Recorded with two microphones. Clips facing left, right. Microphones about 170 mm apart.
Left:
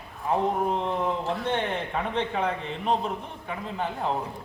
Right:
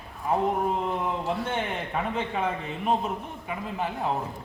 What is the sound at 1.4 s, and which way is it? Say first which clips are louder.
A man's voice: left 2 dB; 5° right (ahead or behind).